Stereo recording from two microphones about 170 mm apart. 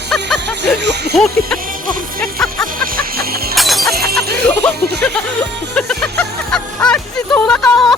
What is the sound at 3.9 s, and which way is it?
Shatter, 65° right (ahead or behind).